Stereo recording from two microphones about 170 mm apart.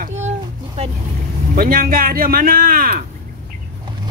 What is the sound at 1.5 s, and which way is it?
A man's voice, 60° right (ahead or behind).